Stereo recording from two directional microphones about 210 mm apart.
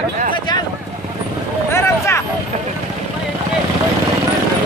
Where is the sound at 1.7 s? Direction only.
10° left (ahead or behind).